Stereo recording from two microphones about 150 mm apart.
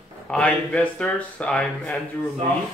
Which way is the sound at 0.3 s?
10° left (ahead or behind).